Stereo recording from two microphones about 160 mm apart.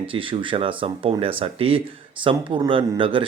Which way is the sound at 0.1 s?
35° right (ahead or behind).